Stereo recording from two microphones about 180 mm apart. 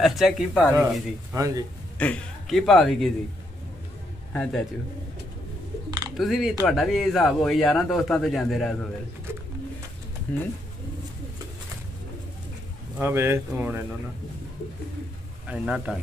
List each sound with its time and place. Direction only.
0.0 s a man's voice: centre (ahead or behind)
1.3 s speech: 20° right (ahead or behind)
2.0 s a man's voice: 5° left (ahead or behind)
4.3 s a man's voice: 5° left (ahead or behind)
5.9 s a sound: 20° right (ahead or behind)
6.1 s a man's voice: centre (ahead or behind)
10.3 s speech: 10° left (ahead or behind)
13.0 s speech: 15° right (ahead or behind)
15.4 s a man's voice: 5° right (ahead or behind)